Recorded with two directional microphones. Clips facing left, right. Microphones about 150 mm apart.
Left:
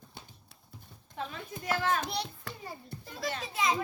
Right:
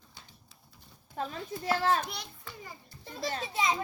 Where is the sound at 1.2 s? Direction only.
40° right (ahead or behind).